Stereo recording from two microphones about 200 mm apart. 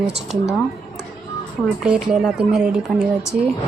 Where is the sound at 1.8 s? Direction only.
5° right (ahead or behind).